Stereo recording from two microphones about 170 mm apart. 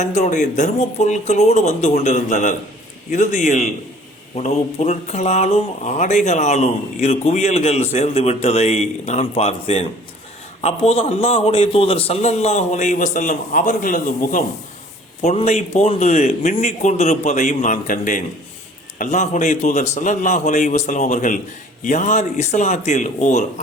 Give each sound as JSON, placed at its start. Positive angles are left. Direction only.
{"t": 0.0, "sound": "a man's voice", "side_deg": 45}
{"t": 15.2, "sound": "a man's voice", "side_deg": 40}